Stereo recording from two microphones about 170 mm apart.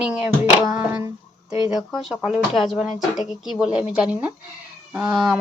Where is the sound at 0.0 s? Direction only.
5° right (ahead or behind).